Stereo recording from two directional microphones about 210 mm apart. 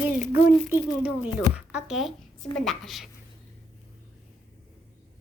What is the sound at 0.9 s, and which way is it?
Speech, 5° right (ahead or behind).